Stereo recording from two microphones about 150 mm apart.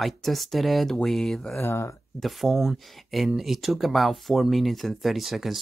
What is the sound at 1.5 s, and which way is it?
Speech, 15° left (ahead or behind).